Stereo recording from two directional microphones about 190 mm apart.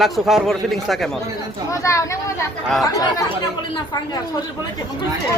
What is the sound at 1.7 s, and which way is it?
Speech, 15° left (ahead or behind).